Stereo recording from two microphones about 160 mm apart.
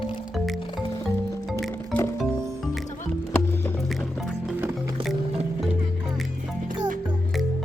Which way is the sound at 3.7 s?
Centre (ahead or behind).